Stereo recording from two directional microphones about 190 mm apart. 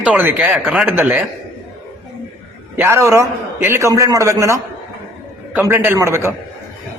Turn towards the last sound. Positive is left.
turn(degrees=-15)  # may be behind; listen again after turning